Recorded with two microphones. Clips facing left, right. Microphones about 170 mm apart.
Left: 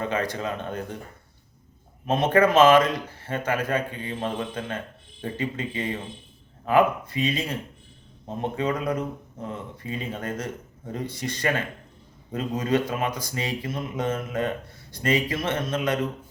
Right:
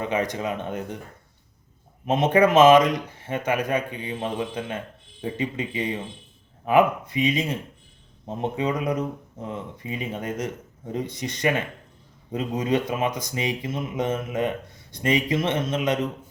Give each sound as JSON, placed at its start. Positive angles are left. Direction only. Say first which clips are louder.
{"t": 0.0, "sound": "speech", "louder": "right 2 dB", "side_deg": -20}
{"t": 2.0, "sound": "speech", "louder": "right 1 dB", "side_deg": -20}